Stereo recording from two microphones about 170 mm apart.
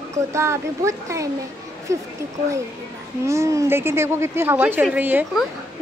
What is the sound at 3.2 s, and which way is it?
Speech, 15° right (ahead or behind).